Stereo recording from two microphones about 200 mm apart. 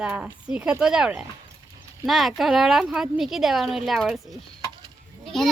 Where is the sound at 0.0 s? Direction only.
5° right (ahead or behind).